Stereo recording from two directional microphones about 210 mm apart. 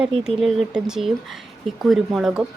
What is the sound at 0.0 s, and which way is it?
Speech, 5° right (ahead or behind).